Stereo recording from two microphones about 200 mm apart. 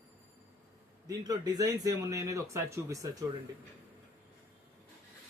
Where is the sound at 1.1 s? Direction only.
20° right (ahead or behind).